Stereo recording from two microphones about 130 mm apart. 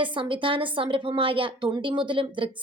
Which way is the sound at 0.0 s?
40° right (ahead or behind).